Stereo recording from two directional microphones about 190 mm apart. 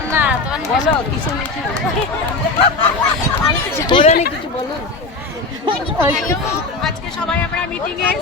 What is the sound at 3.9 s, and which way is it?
Speech, 25° left (ahead or behind).